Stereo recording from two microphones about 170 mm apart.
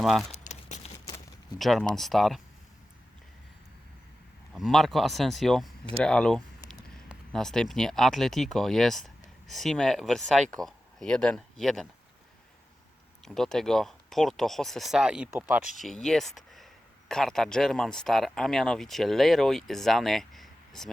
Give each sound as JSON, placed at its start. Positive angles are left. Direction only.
{"t": 0.0, "sound": "speech", "side_deg": 0}
{"t": 0.3, "sound": "a sound", "side_deg": 40}
{"t": 1.5, "sound": "speech", "side_deg": 0}
{"t": 4.5, "sound": "speech", "side_deg": 0}
{"t": 13.2, "sound": "speech", "side_deg": 0}